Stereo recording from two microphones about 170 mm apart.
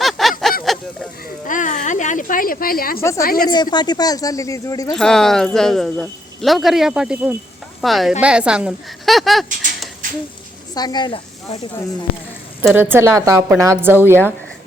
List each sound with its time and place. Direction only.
0.0 s a sound: centre (ahead or behind)
1.5 s speech: 50° left (ahead or behind)
3.5 s speech: 25° left (ahead or behind)
4.9 s speech: 5° left (ahead or behind)
10.8 s speech: 25° left (ahead or behind)
12.7 s a woman's voice: 15° right (ahead or behind)